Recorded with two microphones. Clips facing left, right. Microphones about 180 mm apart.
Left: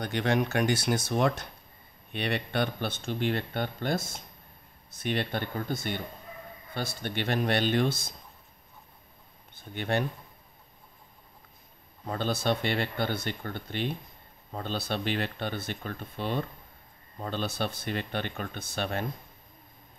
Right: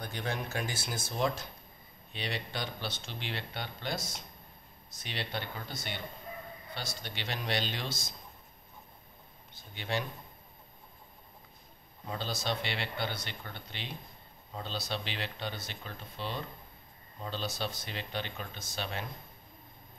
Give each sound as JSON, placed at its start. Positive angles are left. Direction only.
{"t": 0.0, "sound": "speech", "side_deg": 70}
{"t": 9.6, "sound": "speech", "side_deg": 55}
{"t": 12.1, "sound": "speech", "side_deg": 55}